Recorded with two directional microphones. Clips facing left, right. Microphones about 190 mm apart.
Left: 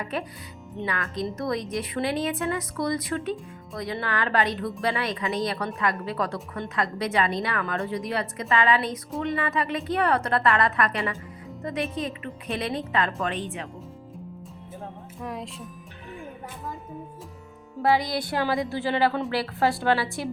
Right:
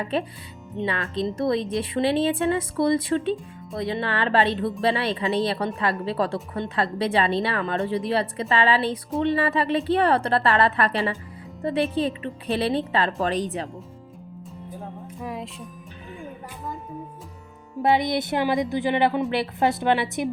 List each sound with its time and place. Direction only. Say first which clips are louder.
0.0 s a woman's voice: right 5 dB; 30° right (ahead or behind)
15.2 s speech: right 1 dB; centre (ahead or behind)
17.8 s a woman's voice: right 2 dB; 20° right (ahead or behind)